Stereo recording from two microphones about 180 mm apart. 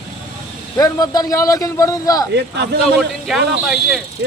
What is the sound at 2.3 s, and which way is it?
Speech, 70° right (ahead or behind).